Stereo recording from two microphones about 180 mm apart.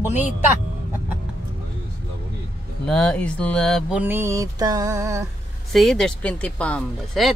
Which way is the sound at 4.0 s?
10° right (ahead or behind).